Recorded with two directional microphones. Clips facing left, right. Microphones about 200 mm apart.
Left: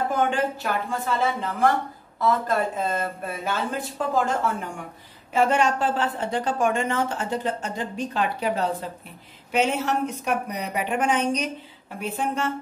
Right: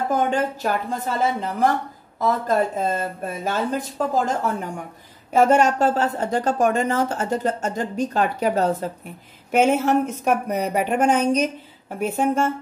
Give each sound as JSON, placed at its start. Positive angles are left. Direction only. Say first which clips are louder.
{"t": 0.1, "sound": "a woman's voice", "louder": "right 2 dB", "side_deg": -40}